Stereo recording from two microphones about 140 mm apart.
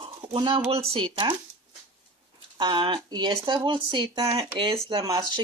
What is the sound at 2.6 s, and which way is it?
Speech, 35° right (ahead or behind).